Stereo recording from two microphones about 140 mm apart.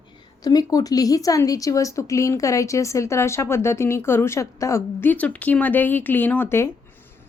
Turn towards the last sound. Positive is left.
turn(degrees=15)  # may be behind; listen again after turning